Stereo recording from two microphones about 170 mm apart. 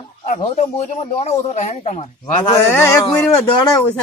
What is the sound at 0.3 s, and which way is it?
Speech, 40° left (ahead or behind).